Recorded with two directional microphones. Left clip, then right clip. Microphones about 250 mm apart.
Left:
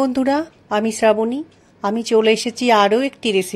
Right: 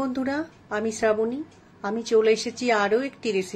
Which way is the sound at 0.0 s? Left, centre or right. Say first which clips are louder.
Left 9 dB; left.